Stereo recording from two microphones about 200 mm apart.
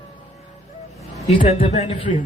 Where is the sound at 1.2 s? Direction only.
35° left (ahead or behind).